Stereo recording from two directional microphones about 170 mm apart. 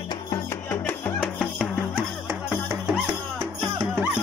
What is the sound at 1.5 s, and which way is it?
Music, 10° right (ahead or behind).